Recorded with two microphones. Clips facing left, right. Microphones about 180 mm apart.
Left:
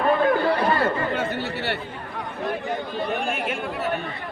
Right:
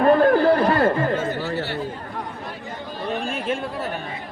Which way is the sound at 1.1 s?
65° left (ahead or behind).